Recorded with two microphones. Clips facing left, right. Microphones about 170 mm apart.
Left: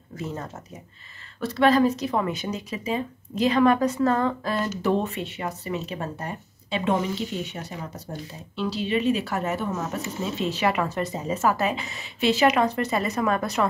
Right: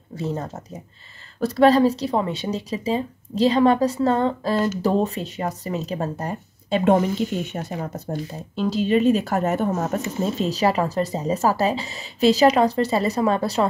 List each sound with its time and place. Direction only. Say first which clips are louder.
0.1 s speech: right 5 dB; 35° right (ahead or behind)